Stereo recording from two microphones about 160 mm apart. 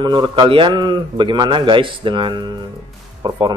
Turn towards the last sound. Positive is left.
turn(degrees=-25)  # may be behind; listen again after turning